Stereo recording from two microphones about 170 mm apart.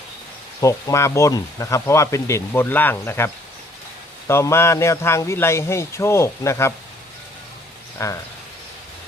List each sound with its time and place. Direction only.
0.6 s speech: 20° left (ahead or behind)
8.0 s speech: 15° left (ahead or behind)